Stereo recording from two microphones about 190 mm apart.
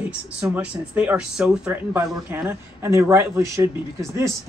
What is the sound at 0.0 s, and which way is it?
Speech, 5° right (ahead or behind).